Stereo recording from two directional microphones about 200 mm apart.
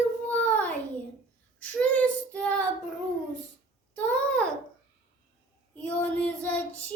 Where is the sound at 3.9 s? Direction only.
5° left (ahead or behind).